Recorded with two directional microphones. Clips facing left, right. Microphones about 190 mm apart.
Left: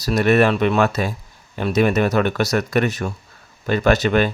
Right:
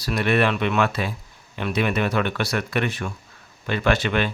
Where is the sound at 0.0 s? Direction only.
40° left (ahead or behind).